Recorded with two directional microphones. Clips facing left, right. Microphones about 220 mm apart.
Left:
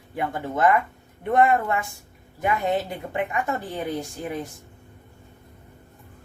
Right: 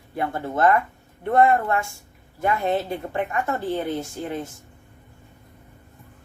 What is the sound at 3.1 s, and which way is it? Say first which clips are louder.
Speech: even; 15° left (ahead or behind).